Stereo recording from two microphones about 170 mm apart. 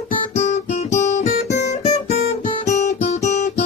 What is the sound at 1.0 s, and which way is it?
Guitar, 45° left (ahead or behind).